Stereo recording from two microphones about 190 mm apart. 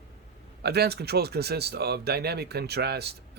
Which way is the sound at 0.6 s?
60° right (ahead or behind).